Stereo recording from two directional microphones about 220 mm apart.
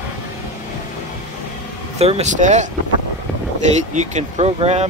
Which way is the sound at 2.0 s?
30° right (ahead or behind).